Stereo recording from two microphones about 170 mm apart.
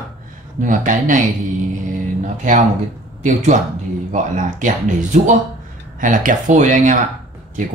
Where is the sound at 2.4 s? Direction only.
45° right (ahead or behind).